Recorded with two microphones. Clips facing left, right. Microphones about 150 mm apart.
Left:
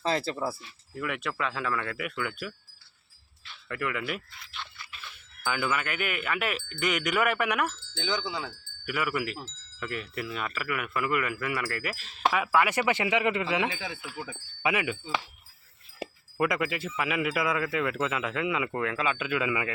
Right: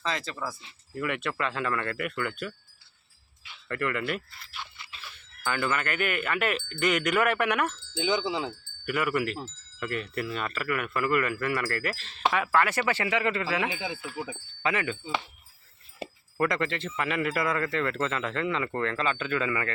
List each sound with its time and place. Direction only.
0.0 s speech: 35° left (ahead or behind)
0.9 s speech: centre (ahead or behind)
3.7 s speech: 5° left (ahead or behind)
8.0 s wind chime: 25° right (ahead or behind)
8.9 s speech: centre (ahead or behind)
13.7 s wind chime: 20° right (ahead or behind)
14.3 s speech: 10° left (ahead or behind)
16.4 s speech: 5° left (ahead or behind)